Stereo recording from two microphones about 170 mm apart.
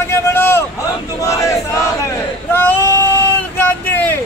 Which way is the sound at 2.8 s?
20° right (ahead or behind).